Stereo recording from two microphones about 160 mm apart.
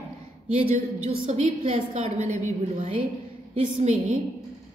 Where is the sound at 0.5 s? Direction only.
40° right (ahead or behind).